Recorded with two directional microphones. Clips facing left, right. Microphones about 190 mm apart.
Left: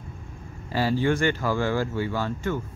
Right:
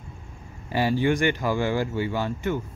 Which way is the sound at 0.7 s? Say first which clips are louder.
Right 1 dB; 15° right (ahead or behind).